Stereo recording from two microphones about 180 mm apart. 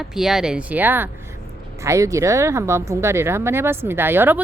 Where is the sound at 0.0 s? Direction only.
Centre (ahead or behind).